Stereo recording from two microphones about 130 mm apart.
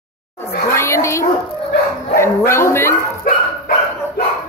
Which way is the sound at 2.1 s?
20° left (ahead or behind).